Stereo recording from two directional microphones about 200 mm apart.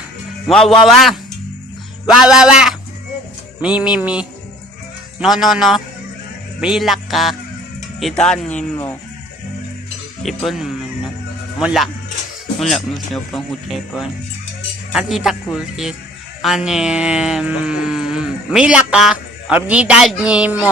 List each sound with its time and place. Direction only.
0.4 s speech: centre (ahead or behind)
10.2 s speech: centre (ahead or behind)